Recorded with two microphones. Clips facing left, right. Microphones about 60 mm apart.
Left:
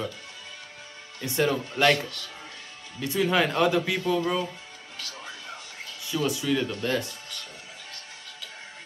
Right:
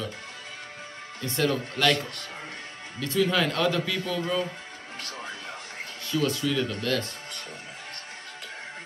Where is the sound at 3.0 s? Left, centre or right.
Centre.